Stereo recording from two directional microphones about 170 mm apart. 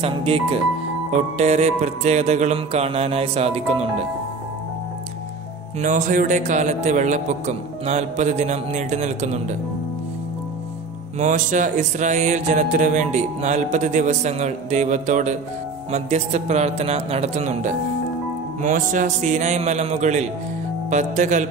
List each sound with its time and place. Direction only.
0.0 s music: 35° right (ahead or behind)
5.8 s mantra: 50° right (ahead or behind)
11.1 s mantra: 45° right (ahead or behind)
15.9 s music: 40° right (ahead or behind)
18.6 s mantra: 50° right (ahead or behind)